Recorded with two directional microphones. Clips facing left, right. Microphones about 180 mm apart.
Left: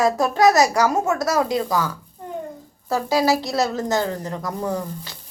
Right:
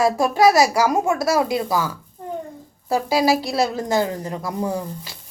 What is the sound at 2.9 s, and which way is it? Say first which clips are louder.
A woman's voice: right 1 dB; 10° right (ahead or behind).